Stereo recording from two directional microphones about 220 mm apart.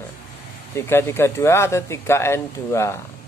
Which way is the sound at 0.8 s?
10° left (ahead or behind).